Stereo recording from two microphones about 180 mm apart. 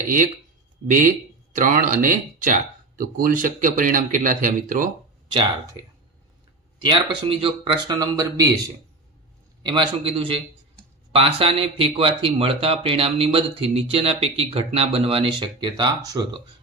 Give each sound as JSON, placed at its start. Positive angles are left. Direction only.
{"t": 1.5, "sound": "speech", "side_deg": -45}
{"t": 6.8, "sound": "speech", "side_deg": -30}
{"t": 7.9, "sound": "speech", "side_deg": -20}
{"t": 9.6, "sound": "speech", "side_deg": -30}